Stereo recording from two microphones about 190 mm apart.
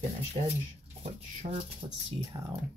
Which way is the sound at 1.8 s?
30° right (ahead or behind).